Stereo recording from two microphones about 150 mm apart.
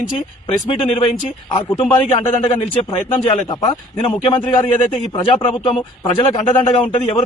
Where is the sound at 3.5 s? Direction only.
30° left (ahead or behind).